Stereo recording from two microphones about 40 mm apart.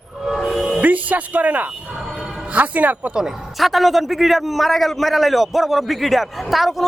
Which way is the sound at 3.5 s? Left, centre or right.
Centre.